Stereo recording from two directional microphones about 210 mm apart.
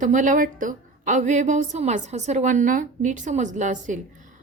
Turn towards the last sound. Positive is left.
turn(degrees=-35)  # may be behind; listen again after turning